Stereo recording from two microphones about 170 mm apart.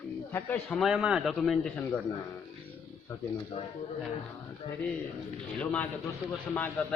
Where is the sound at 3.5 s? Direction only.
35° left (ahead or behind).